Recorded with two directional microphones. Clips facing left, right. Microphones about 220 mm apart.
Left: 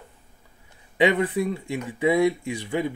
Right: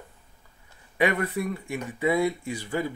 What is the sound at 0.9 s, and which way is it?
Speech, 20° left (ahead or behind).